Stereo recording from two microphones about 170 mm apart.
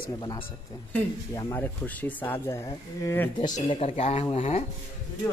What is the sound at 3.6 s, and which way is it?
Speech, 35° left (ahead or behind).